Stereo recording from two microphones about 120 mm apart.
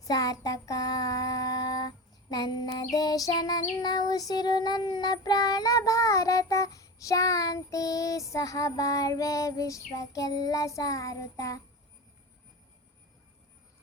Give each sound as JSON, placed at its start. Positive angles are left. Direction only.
{"t": 0.0, "sound": "child singing", "side_deg": 30}